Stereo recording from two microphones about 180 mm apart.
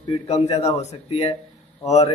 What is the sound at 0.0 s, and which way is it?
A man's voice, 35° left (ahead or behind).